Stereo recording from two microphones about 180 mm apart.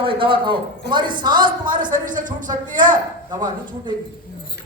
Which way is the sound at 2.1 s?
45° right (ahead or behind).